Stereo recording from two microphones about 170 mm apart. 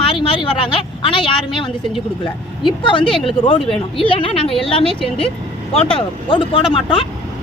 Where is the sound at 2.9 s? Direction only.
30° left (ahead or behind).